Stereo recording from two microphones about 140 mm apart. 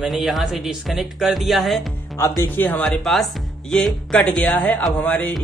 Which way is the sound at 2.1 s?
20° left (ahead or behind).